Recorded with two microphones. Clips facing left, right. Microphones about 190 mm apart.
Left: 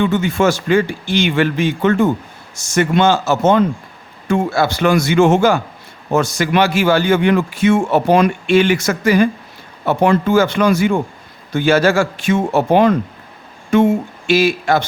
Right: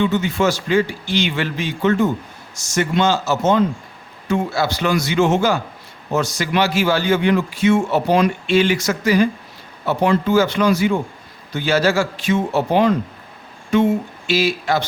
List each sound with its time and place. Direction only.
0.0 s a man's voice: 50° left (ahead or behind)